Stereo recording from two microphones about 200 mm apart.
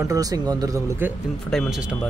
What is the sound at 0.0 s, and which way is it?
Speech, 15° right (ahead or behind).